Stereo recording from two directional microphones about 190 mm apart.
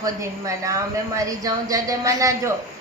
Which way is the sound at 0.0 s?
15° right (ahead or behind).